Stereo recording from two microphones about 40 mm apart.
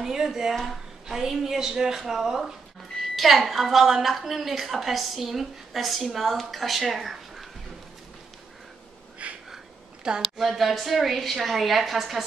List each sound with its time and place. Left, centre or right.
0.0 s a woman's voice: centre
9.2 s a sound: right
10.3 s a woman's voice: centre